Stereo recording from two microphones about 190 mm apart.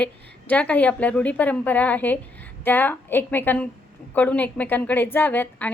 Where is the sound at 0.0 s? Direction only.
5° left (ahead or behind).